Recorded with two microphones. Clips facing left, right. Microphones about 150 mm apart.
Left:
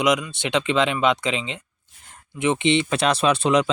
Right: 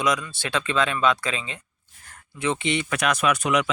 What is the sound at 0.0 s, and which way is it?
Speech, 20° left (ahead or behind).